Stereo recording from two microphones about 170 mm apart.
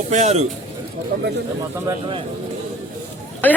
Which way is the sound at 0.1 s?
40° right (ahead or behind).